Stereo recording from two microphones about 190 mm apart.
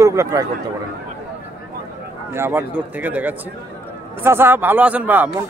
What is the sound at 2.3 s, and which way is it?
Speech, 10° right (ahead or behind).